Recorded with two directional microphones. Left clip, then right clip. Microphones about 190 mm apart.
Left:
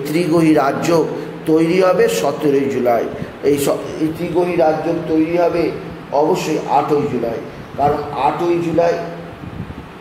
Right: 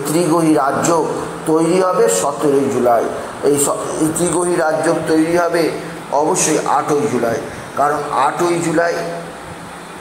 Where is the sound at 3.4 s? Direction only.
10° left (ahead or behind).